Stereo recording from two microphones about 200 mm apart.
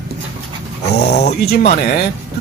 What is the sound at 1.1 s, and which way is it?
Speech, 55° left (ahead or behind).